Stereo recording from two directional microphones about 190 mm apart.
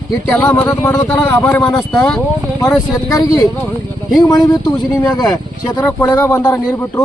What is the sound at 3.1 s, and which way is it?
Speech, 20° left (ahead or behind).